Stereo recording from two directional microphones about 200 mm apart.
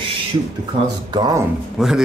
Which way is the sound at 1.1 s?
20° right (ahead or behind).